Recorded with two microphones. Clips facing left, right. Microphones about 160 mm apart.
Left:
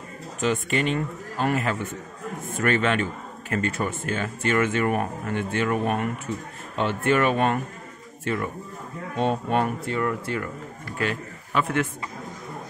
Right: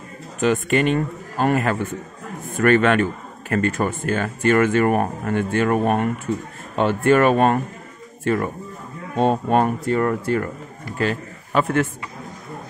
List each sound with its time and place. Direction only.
0.4 s a man's voice: 60° right (ahead or behind); by 11.9 s 40° right (ahead or behind)